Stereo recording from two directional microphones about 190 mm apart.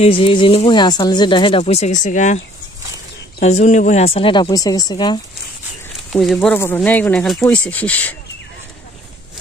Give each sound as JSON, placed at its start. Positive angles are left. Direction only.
{"t": 0.0, "sound": "speech", "side_deg": 30}
{"t": 6.1, "sound": "speech", "side_deg": 0}